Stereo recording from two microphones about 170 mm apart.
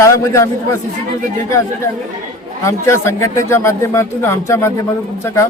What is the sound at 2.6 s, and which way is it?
A man's voice, 15° left (ahead or behind).